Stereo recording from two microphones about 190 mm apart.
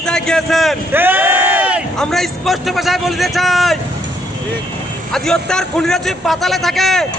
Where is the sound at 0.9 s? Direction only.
10° right (ahead or behind).